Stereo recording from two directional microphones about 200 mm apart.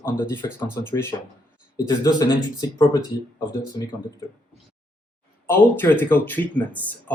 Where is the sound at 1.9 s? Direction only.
20° left (ahead or behind).